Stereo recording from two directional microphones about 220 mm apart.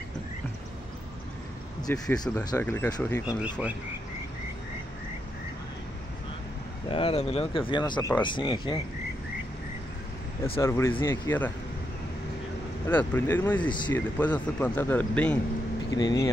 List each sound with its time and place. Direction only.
1.9 s a man's voice: 10° left (ahead or behind)
3.3 s speech: 5° right (ahead or behind)
6.9 s speech: 25° left (ahead or behind)
10.6 s a man's voice: 10° left (ahead or behind)
12.8 s a man's voice: 10° left (ahead or behind)
13.7 s speech: 20° left (ahead or behind)
14.1 s a man's voice: 10° left (ahead or behind)
16.0 s speech: 20° left (ahead or behind)